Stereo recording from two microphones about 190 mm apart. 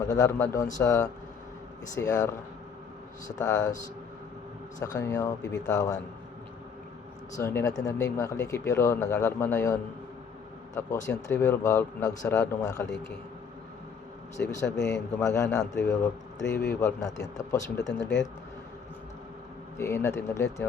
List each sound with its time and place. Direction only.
0.1 s speech: 15° left (ahead or behind)
4.8 s speech: 15° left (ahead or behind)
5.4 s speech: 70° left (ahead or behind)
5.6 s speech: 20° left (ahead or behind)
7.3 s speech: 15° left (ahead or behind)
10.8 s speech: 15° left (ahead or behind)
14.3 s speech: 15° left (ahead or behind)
16.5 s speech: 15° left (ahead or behind)
17.8 s speech: 70° left (ahead or behind)
19.8 s speech: 15° left (ahead or behind)